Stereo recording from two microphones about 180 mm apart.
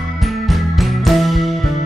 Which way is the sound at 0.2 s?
Centre (ahead or behind).